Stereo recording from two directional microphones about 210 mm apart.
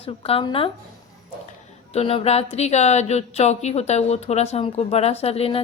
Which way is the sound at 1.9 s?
30° left (ahead or behind).